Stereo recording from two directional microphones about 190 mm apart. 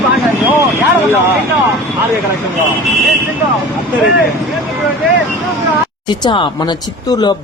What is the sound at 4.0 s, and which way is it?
Speech, centre (ahead or behind).